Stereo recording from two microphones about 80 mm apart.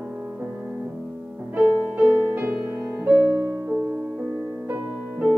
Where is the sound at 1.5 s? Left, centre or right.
Right.